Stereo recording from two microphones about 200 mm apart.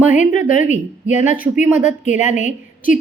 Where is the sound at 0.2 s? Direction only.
40° left (ahead or behind).